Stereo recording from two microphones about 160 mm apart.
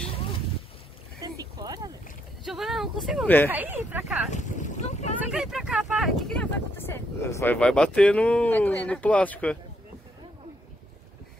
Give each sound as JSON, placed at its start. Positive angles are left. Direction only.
{"t": 1.2, "sound": "boat", "side_deg": -25}
{"t": 2.4, "sound": "speech", "side_deg": 0}
{"t": 3.4, "sound": "speech", "side_deg": -10}
{"t": 4.3, "sound": "boat", "side_deg": 50}
{"t": 5.2, "sound": "speech", "side_deg": -5}
{"t": 7.5, "sound": "speech", "side_deg": 5}